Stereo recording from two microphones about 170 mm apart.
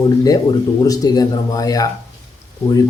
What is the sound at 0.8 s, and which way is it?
A man's voice, 20° left (ahead or behind).